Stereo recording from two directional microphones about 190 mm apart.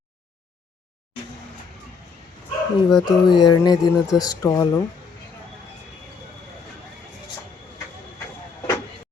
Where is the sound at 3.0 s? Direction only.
25° left (ahead or behind).